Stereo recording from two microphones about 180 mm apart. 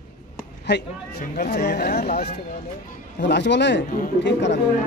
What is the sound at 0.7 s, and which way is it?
Speech, 75° left (ahead or behind).